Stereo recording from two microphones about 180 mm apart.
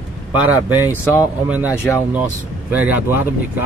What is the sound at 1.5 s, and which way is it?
Speech, 10° right (ahead or behind).